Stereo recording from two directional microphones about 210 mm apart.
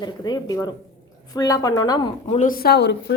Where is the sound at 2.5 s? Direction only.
45° left (ahead or behind).